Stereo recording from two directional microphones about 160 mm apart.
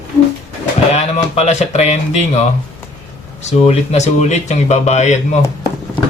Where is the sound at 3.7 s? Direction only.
45° left (ahead or behind).